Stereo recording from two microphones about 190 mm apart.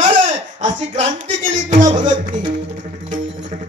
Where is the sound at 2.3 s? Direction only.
75° right (ahead or behind).